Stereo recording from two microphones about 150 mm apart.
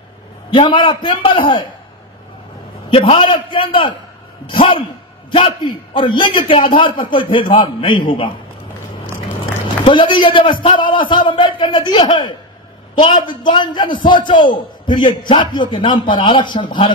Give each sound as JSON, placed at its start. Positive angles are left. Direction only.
{"t": 0.6, "sound": "a man's voice", "side_deg": 30}
{"t": 2.9, "sound": "a man's voice", "side_deg": 40}
{"t": 9.8, "sound": "a man's voice", "side_deg": 30}